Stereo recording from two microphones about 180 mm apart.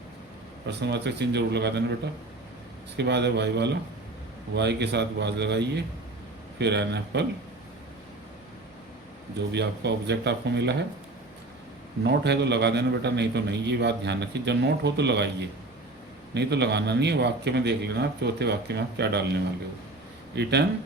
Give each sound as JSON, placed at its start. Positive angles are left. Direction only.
{"t": 0.7, "sound": "a man's voice", "side_deg": -70}
{"t": 2.9, "sound": "a man's voice", "side_deg": -70}
{"t": 9.5, "sound": "a man's voice", "side_deg": -70}
{"t": 12.0, "sound": "a man's voice", "side_deg": -70}